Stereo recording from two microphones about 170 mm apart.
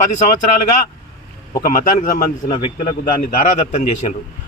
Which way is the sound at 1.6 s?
50° left (ahead or behind).